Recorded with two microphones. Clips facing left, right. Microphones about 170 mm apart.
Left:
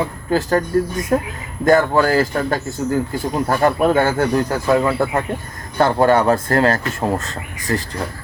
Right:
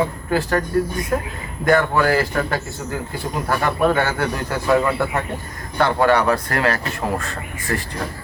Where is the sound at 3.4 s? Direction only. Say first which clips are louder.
Left 3 dB; 40° left (ahead or behind).